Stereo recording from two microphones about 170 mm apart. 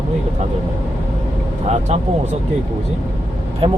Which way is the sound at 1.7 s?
40° right (ahead or behind).